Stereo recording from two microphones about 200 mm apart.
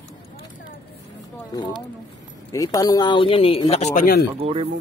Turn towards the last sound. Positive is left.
turn(degrees=-30)  # may be behind; listen again after turning